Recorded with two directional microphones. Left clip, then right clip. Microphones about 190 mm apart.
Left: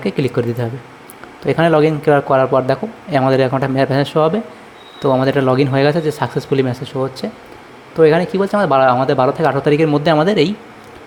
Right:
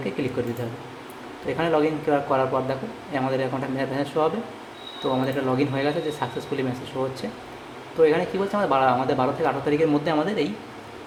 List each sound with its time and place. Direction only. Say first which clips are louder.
0.2 s a man's voice: left 10 dB; 50° left (ahead or behind)
1.5 s a man's voice: left 10 dB; 45° left (ahead or behind)